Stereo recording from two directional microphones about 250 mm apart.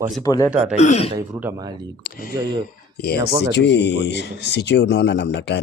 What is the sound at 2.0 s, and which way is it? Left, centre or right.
Speech, left.